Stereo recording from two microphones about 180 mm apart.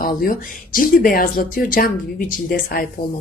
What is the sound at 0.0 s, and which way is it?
Speech, 50° left (ahead or behind).